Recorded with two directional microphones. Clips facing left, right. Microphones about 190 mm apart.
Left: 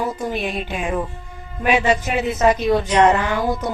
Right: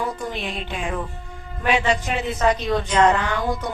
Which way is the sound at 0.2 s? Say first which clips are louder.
Left 5 dB; 15° left (ahead or behind).